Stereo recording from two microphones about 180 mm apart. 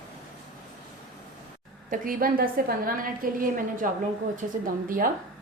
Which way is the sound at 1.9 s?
50° right (ahead or behind).